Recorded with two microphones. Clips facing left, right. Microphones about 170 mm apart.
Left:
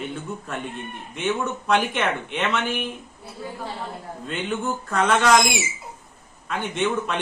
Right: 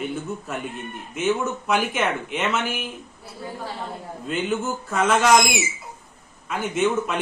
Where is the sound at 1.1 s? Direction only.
5° right (ahead or behind).